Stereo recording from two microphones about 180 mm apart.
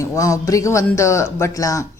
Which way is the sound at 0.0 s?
15° left (ahead or behind).